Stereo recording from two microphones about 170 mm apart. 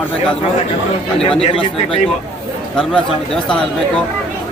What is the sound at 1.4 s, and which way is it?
Speech, 35° left (ahead or behind).